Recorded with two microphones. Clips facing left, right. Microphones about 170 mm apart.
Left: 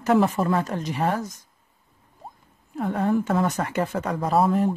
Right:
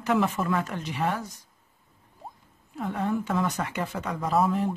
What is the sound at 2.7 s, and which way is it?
A woman's voice, 45° left (ahead or behind).